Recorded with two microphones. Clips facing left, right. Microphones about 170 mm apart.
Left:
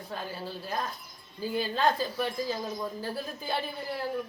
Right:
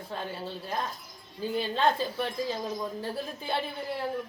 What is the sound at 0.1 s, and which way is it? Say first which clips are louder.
A woman's voice: right 1 dB; centre (ahead or behind).